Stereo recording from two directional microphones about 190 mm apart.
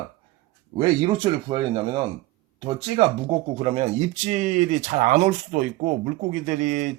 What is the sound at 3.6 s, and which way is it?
Speech, 35° right (ahead or behind).